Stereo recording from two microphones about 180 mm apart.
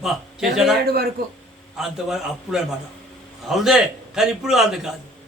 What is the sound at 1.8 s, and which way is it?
A man's voice, centre (ahead or behind).